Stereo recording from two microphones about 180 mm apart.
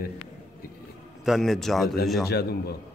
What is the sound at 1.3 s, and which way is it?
Speech, centre (ahead or behind).